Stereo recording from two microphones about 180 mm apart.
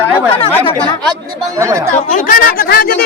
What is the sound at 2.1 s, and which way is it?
Speech, 50° left (ahead or behind).